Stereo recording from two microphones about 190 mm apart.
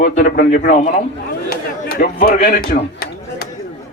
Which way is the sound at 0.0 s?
50° left (ahead or behind).